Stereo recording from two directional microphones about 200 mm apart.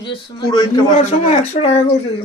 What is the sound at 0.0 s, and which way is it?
Speech, 25° left (ahead or behind).